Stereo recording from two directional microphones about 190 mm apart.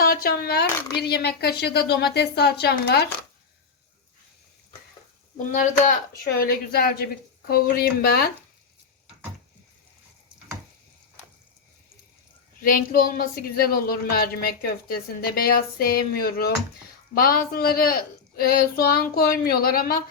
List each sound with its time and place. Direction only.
0.0 s speech: 50° left (ahead or behind)
0.8 s speech: 20° left (ahead or behind)
1.0 s speech: 60° left (ahead or behind)
5.4 s speech: 40° left (ahead or behind)
12.6 s speech: 45° left (ahead or behind)